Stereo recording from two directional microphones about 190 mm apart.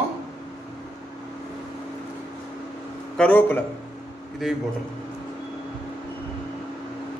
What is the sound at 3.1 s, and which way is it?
Speech, 5° left (ahead or behind).